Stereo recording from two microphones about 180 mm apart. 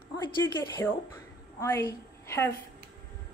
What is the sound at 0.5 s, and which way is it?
Speech, 15° left (ahead or behind).